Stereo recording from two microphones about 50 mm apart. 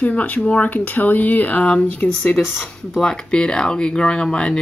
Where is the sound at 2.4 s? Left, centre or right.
Centre.